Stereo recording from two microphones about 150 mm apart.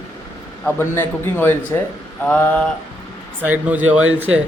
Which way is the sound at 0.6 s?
15° left (ahead or behind).